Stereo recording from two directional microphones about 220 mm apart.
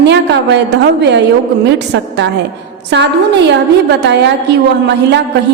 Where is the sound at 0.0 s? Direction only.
50° right (ahead or behind).